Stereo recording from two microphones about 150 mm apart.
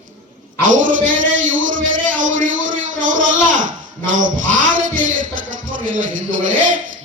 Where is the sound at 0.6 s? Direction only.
60° right (ahead or behind).